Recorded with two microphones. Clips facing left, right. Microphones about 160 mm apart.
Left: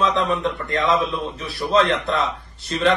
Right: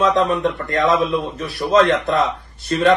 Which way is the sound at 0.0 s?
55° right (ahead or behind).